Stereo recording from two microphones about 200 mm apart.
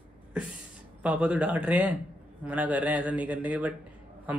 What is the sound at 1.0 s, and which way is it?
A man's voice, 5° right (ahead or behind).